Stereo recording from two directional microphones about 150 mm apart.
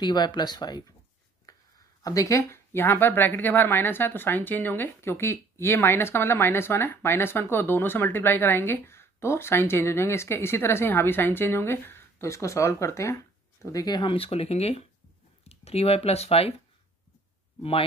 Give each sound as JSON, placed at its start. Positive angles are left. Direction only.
{"t": 0.0, "sound": "speech", "side_deg": 30}
{"t": 17.6, "sound": "speech", "side_deg": 40}